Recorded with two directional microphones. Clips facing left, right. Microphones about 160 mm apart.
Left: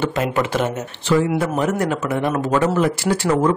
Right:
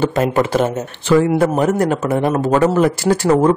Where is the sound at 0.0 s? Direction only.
35° right (ahead or behind).